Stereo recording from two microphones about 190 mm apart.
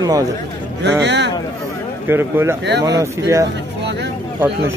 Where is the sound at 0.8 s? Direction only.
65° right (ahead or behind).